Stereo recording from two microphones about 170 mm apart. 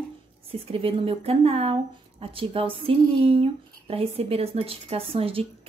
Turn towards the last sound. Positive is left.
turn(degrees=-35)  # may be behind; listen again after turning